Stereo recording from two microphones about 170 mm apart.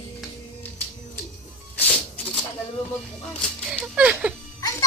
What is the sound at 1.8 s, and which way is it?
Music, 10° left (ahead or behind).